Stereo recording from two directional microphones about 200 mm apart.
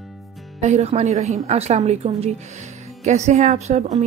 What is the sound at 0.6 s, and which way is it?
A woman's voice, 35° right (ahead or behind).